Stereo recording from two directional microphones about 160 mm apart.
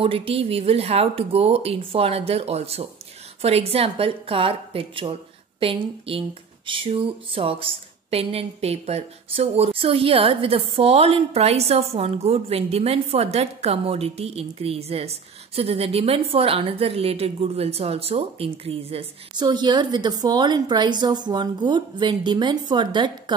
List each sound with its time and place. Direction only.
0.0 s speech: 35° right (ahead or behind)